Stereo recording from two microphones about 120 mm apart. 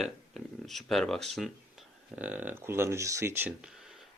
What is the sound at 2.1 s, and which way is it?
Speech, 10° right (ahead or behind).